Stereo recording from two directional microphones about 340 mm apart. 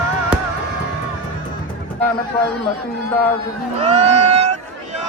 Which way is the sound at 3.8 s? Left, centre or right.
Centre.